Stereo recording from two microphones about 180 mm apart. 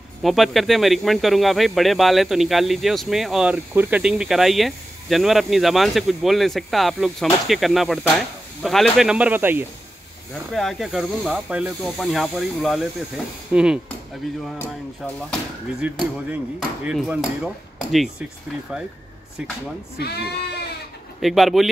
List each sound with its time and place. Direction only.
0.2 s speech: centre (ahead or behind)
10.5 s speech: centre (ahead or behind)
15.8 s speech: 10° right (ahead or behind)
20.0 s speech: 65° left (ahead or behind)
21.2 s speech: centre (ahead or behind)